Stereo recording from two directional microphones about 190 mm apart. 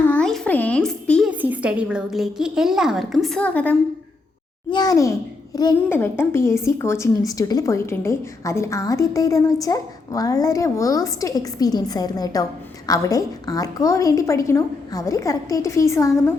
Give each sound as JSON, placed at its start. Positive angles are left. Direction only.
{"t": 0.0, "sound": "a sound", "side_deg": 5}
{"t": 1.3, "sound": "a woman's voice", "side_deg": -10}
{"t": 4.7, "sound": "a woman's voice", "side_deg": 20}